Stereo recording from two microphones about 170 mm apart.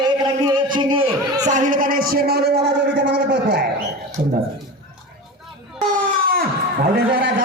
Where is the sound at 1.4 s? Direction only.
50° right (ahead or behind); by 3.6 s 85° right.